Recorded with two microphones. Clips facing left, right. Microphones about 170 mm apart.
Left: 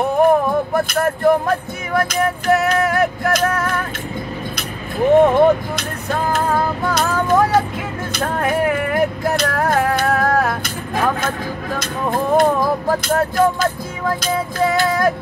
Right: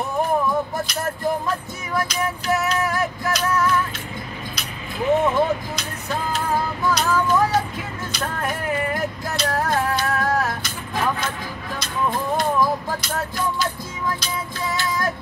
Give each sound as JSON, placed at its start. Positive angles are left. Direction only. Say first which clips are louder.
{"t": 0.7, "sound": "music", "louder": "left 8 dB", "side_deg": 60}
{"t": 5.2, "sound": "music", "louder": "left 8 dB", "side_deg": 60}